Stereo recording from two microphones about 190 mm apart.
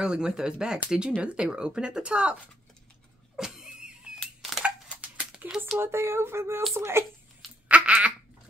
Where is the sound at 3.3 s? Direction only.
5° right (ahead or behind).